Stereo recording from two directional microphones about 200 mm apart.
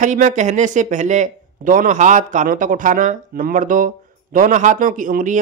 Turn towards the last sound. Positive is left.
turn(degrees=-40)  # may be behind; listen again after turning